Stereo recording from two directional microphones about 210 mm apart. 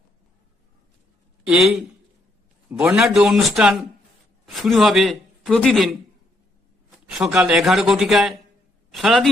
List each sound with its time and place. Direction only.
1.5 s a man's voice: centre (ahead or behind)
7.1 s speech: 5° right (ahead or behind)